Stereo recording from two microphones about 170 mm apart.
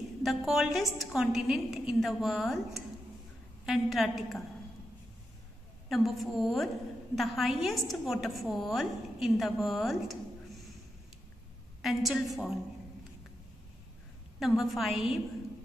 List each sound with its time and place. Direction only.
0.2 s a woman's voice: centre (ahead or behind)
5.9 s a woman's voice: centre (ahead or behind)
11.8 s a woman's voice: centre (ahead or behind)
14.4 s a woman's voice: centre (ahead or behind)